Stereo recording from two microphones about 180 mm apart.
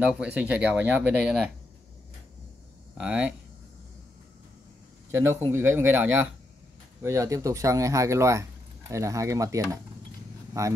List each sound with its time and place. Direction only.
0.0 s speech: 5° right (ahead or behind)
3.0 s speech: 5° right (ahead or behind)
5.1 s speech: 15° right (ahead or behind)